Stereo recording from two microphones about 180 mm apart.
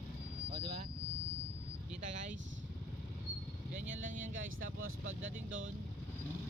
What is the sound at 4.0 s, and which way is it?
Vehicle, 50° right (ahead or behind).